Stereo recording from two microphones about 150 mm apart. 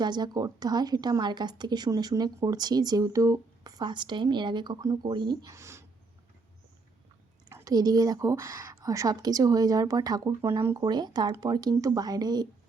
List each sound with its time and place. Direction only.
0.0 s a woman's voice: 30° right (ahead or behind)
5.5 s speech: 20° right (ahead or behind)
7.5 s a woman's voice: 25° right (ahead or behind)
10.8 s a woman's voice: 30° right (ahead or behind)